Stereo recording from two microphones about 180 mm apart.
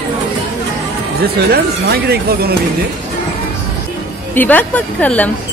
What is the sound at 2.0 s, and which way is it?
Speech, 60° right (ahead or behind).